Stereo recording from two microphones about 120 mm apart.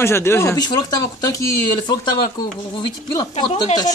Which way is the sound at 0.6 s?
35° left (ahead or behind).